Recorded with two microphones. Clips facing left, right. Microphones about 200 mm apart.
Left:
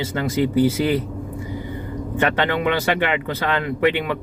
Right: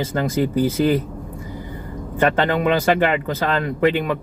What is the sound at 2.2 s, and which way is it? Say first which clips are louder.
Speech: right 3 dB; 40° right (ahead or behind).